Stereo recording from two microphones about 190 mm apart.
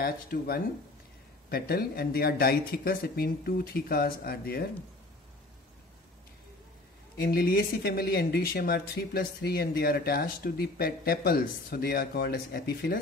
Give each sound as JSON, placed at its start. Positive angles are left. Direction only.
{"t": 0.0, "sound": "speech", "side_deg": 50}
{"t": 7.2, "sound": "speech", "side_deg": 50}